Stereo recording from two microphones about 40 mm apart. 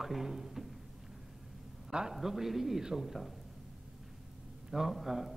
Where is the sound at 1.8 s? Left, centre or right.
Centre.